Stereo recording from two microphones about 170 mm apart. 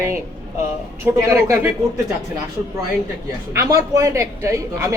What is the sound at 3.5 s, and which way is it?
A man's voice, 20° right (ahead or behind).